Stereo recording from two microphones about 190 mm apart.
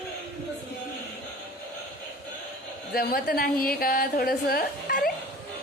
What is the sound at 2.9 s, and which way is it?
A woman's voice, 50° left (ahead or behind).